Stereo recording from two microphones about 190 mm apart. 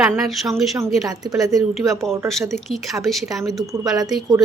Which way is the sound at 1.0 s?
20° right (ahead or behind).